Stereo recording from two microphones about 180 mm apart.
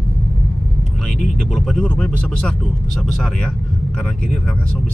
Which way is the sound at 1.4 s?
Centre (ahead or behind).